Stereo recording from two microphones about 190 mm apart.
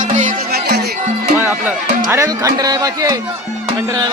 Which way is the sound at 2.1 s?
15° right (ahead or behind).